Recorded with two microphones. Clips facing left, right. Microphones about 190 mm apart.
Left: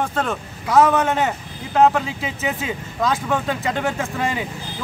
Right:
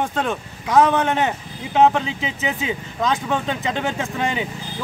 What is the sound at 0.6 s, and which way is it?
Speech, 15° right (ahead or behind).